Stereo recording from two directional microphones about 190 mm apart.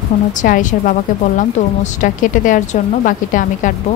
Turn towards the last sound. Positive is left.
turn(degrees=45)  # may be behind; listen again after turning